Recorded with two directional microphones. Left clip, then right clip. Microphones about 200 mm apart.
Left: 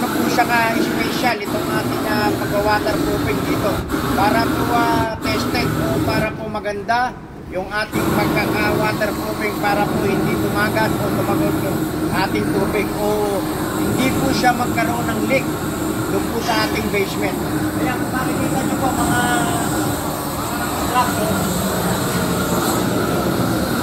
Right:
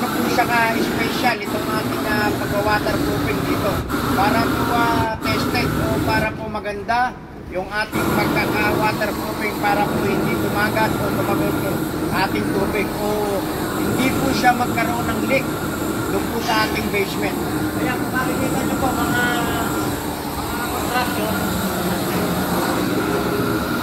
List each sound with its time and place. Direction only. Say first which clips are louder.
14.3 s speech: right 1 dB; 5° left (ahead or behind)